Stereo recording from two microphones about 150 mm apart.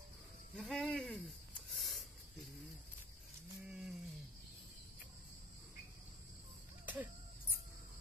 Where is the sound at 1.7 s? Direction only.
Centre (ahead or behind).